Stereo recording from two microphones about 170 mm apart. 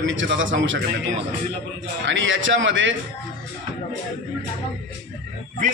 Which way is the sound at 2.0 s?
90° right.